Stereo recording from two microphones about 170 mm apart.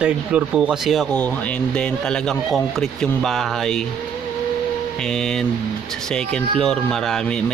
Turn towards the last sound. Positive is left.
turn(degrees=5)  # may be behind; listen again after turning